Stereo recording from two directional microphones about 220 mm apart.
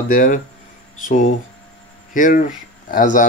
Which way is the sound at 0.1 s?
40° left (ahead or behind).